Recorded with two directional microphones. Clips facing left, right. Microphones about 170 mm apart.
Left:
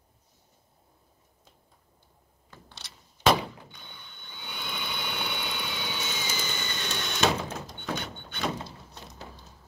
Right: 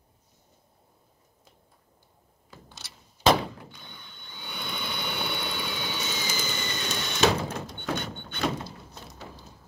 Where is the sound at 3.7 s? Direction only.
Centre (ahead or behind).